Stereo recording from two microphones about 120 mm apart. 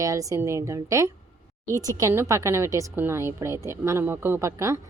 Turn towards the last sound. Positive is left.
turn(degrees=-25)  # may be behind; listen again after turning